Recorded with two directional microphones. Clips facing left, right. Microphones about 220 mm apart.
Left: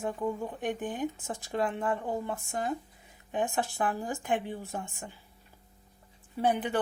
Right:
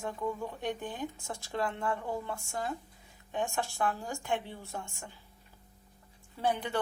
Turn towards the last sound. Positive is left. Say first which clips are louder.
# left 4 dB
turn(degrees=15)  # may be behind; listen again after turning